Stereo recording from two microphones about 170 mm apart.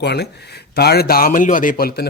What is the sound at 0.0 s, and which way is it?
Speech, 75° left (ahead or behind).